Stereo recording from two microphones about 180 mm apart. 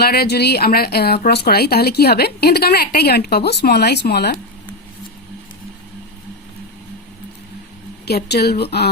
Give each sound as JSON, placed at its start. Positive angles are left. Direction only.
{"t": 0.0, "sound": "a woman's voice", "side_deg": 60}
{"t": 8.0, "sound": "a woman's voice", "side_deg": 65}